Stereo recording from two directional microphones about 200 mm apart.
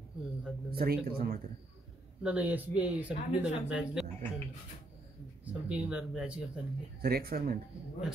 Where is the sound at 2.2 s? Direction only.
5° right (ahead or behind).